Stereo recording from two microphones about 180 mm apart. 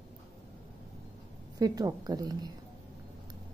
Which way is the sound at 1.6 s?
20° right (ahead or behind).